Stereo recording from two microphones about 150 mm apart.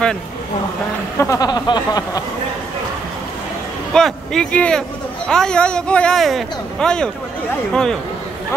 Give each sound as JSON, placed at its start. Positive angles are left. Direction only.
{"t": 1.2, "sound": "speech", "side_deg": 20}
{"t": 3.9, "sound": "speech", "side_deg": 5}